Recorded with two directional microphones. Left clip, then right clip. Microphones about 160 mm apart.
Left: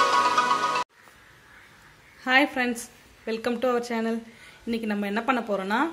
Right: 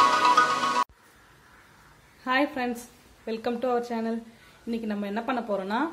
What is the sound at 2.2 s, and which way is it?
A woman's voice, 10° left (ahead or behind).